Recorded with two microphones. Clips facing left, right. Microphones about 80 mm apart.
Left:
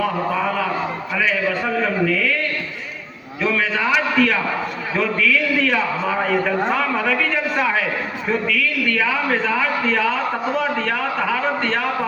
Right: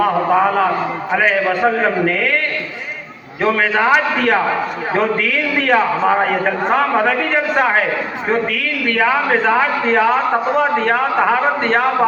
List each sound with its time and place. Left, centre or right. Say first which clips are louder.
0.0 s a man's voice: right 7 dB; right